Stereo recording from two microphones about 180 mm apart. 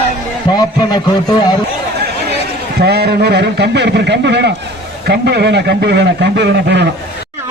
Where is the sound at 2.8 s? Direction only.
65° right (ahead or behind).